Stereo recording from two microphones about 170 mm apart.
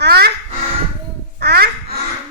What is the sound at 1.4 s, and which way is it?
Speech, 65° right (ahead or behind).